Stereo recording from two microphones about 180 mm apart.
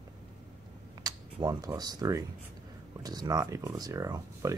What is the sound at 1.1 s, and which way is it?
Speech, 20° right (ahead or behind).